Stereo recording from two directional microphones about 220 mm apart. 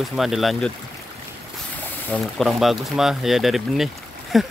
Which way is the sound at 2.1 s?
Centre (ahead or behind).